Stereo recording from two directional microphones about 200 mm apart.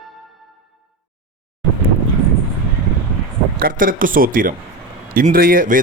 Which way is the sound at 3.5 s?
45° right (ahead or behind).